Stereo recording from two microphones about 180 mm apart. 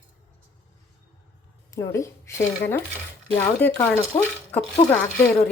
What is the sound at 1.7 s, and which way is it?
Speech, 15° left (ahead or behind).